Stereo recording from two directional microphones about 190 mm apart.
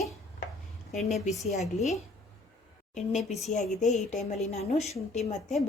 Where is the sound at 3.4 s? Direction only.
40° left (ahead or behind).